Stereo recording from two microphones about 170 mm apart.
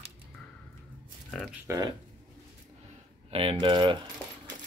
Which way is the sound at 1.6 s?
20° right (ahead or behind).